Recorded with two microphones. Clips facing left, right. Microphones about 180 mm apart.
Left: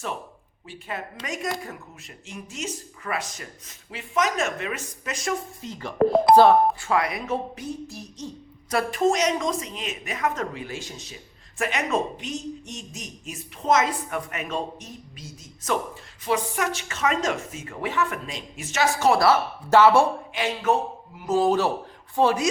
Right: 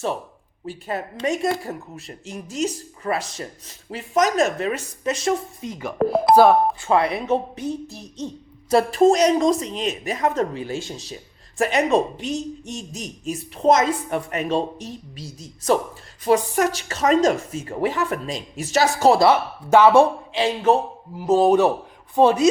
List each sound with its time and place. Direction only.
0.6 s speech: 40° right (ahead or behind)
5.6 s speech: 15° right (ahead or behind)
6.0 s speech: 5° right (ahead or behind)
6.8 s speech: 30° right (ahead or behind)
20.3 s speech: 30° right (ahead or behind)